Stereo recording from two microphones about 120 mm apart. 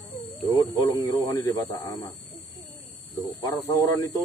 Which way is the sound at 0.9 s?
30° left (ahead or behind).